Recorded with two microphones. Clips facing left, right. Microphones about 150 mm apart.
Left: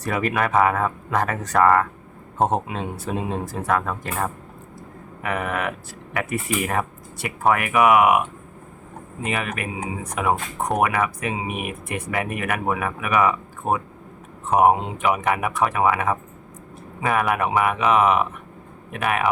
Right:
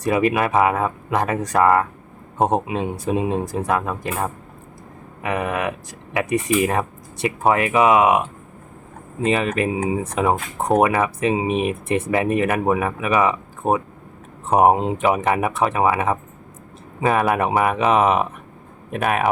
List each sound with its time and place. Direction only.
0.1 s speech: 20° right (ahead or behind)